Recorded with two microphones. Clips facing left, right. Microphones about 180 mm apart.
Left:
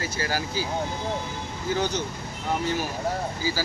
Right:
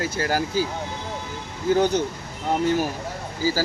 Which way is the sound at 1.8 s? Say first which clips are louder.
Right 6 dB; 55° right (ahead or behind).